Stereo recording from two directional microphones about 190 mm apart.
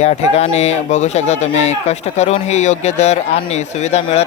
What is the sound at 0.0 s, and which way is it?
Speech, 35° left (ahead or behind).